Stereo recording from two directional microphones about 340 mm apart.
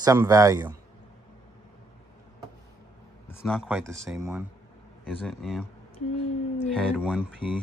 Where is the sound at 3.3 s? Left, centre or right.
Centre.